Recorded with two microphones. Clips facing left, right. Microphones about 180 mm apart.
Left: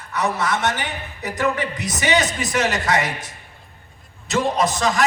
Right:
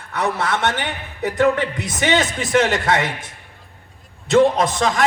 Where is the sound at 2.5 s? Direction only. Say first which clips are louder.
Right 6 dB; 55° right (ahead or behind).